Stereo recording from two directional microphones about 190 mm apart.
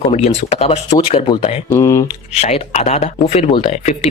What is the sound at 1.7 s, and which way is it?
Speech, 15° left (ahead or behind).